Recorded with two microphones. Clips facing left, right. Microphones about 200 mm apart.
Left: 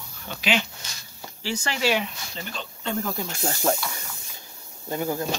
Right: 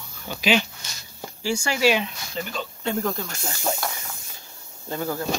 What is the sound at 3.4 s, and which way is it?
Speech, 45° left (ahead or behind).